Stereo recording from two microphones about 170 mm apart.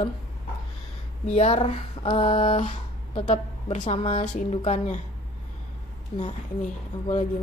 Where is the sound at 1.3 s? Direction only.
40° left (ahead or behind).